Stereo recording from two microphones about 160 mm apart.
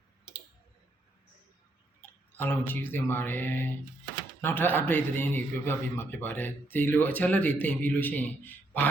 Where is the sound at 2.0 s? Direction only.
10° left (ahead or behind).